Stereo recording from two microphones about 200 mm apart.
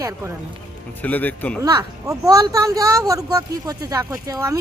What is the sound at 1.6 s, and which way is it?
Speech, 15° right (ahead or behind).